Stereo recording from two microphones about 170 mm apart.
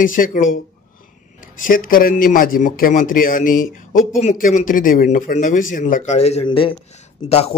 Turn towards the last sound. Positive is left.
turn(degrees=35)  # may be behind; listen again after turning